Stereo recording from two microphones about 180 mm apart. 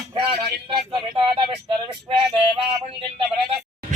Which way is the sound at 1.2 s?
30° right (ahead or behind).